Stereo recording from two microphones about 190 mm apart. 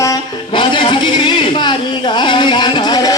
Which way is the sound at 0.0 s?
20° left (ahead or behind).